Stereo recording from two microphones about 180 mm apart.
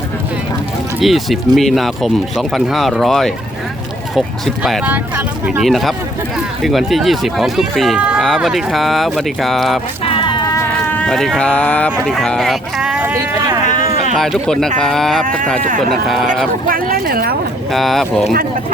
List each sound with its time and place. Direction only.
1.0 s speech: centre (ahead or behind)
10.0 s music: 30° left (ahead or behind)
11.0 s speech: centre (ahead or behind)
13.7 s a sound: 45° left (ahead or behind)
14.2 s speech: centre (ahead or behind)
16.6 s a sound: 55° right (ahead or behind)
17.7 s speech: centre (ahead or behind)